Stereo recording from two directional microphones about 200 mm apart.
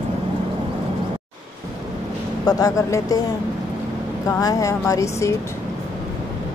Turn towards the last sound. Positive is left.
turn(degrees=15)  # may be behind; listen again after turning